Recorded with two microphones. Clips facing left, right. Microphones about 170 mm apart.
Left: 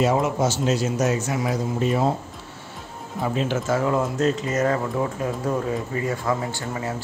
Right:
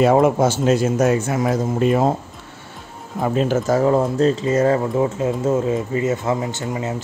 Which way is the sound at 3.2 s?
50° right (ahead or behind).